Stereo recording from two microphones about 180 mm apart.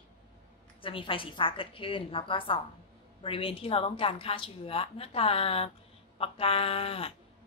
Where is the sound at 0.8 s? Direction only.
30° left (ahead or behind).